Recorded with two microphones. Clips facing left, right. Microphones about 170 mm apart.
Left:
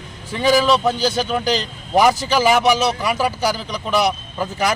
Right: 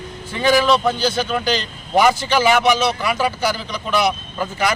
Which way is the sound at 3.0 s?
Centre (ahead or behind).